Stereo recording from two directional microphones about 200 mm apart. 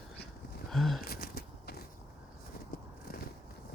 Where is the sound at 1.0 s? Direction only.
50° left (ahead or behind).